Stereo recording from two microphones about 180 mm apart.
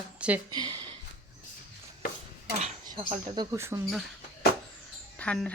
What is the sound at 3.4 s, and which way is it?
Speech, 20° right (ahead or behind).